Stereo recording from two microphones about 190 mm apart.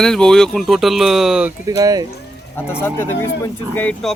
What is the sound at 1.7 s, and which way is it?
Speech, 20° right (ahead or behind).